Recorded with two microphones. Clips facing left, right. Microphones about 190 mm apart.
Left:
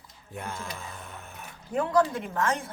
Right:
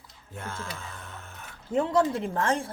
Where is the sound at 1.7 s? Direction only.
25° right (ahead or behind).